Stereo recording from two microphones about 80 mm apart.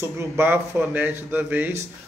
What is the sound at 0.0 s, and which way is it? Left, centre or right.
Speech, right.